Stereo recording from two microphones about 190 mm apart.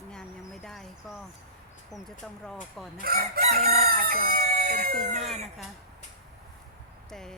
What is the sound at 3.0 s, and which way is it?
Speech, 55° right (ahead or behind).